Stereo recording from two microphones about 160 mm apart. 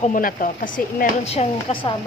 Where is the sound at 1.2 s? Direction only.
40° left (ahead or behind).